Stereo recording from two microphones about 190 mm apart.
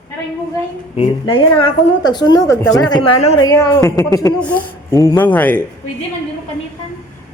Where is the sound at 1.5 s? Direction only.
25° left (ahead or behind).